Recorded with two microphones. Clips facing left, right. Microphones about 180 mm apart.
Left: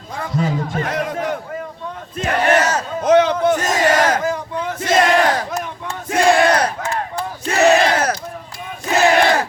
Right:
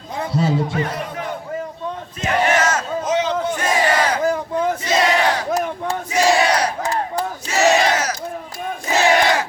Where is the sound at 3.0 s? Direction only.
60° left (ahead or behind).